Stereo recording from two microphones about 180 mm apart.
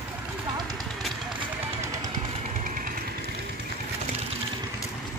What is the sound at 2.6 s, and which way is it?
Motorcycle, 50° right (ahead or behind).